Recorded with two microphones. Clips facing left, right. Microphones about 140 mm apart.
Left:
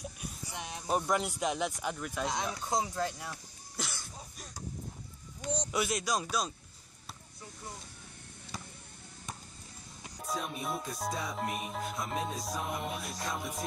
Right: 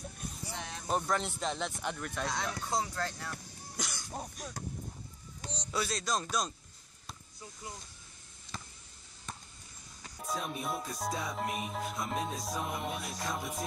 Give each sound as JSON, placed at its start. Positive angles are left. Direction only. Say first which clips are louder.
{"t": 0.2, "sound": "a sound", "louder": "even", "side_deg": 15}
{"t": 0.8, "sound": "speech", "louder": "left 2 dB", "side_deg": 10}
{"t": 2.2, "sound": "speech", "louder": "left 2 dB", "side_deg": 15}
{"t": 5.7, "sound": "speech", "louder": "right 1 dB", "side_deg": 15}
{"t": 8.5, "sound": "a sound", "louder": "left 1 dB", "side_deg": 10}
{"t": 10.2, "sound": "music", "louder": "even", "side_deg": 0}